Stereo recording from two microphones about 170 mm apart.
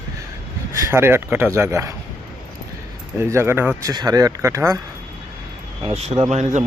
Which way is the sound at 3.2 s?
15° right (ahead or behind).